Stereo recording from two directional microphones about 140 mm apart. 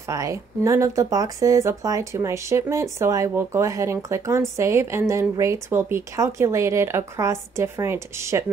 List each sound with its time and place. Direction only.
0.1 s speech: 20° right (ahead or behind)